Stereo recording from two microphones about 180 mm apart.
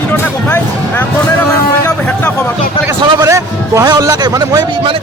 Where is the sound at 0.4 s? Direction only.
10° left (ahead or behind).